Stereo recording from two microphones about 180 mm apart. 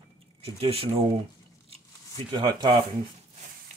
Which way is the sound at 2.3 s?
25° right (ahead or behind).